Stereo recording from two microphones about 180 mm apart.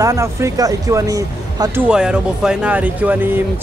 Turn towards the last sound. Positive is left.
turn(degrees=-10)  # may be behind; listen again after turning